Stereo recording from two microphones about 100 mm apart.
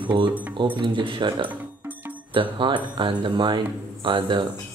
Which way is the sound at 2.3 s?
55° right (ahead or behind).